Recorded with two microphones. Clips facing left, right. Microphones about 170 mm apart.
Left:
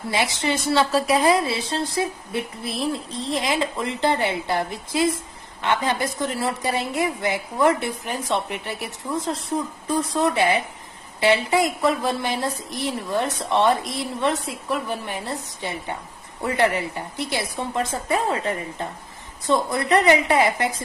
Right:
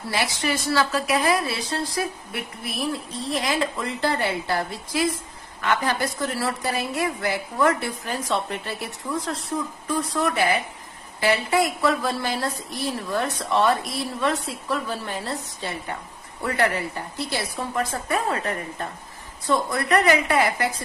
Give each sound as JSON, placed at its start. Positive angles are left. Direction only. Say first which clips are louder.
{"t": 0.1, "sound": "a woman's voice", "louder": "left 2 dB", "side_deg": 25}